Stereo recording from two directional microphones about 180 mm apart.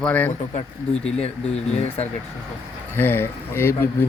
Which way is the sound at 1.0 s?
35° left (ahead or behind).